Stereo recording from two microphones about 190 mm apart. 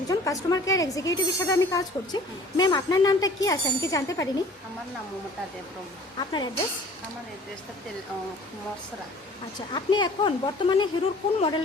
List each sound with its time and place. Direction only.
0.1 s a woman's voice: 20° left (ahead or behind)
6.1 s a woman's voice: 20° left (ahead or behind)
9.6 s a woman's voice: 25° left (ahead or behind)